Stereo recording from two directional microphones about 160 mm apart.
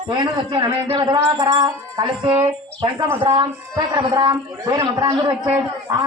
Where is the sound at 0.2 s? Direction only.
25° right (ahead or behind).